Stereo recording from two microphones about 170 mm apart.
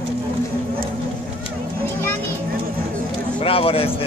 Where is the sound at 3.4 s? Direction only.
35° left (ahead or behind).